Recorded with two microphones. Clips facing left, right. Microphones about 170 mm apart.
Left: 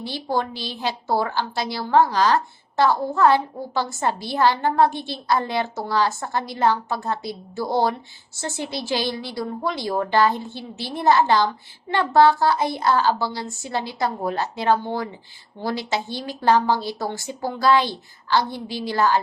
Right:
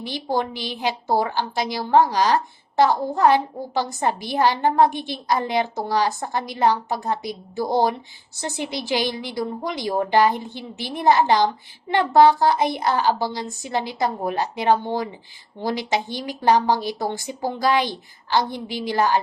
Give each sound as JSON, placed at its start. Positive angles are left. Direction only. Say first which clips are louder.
{"t": 0.0, "sound": "a woman's voice", "louder": "right 1 dB", "side_deg": -20}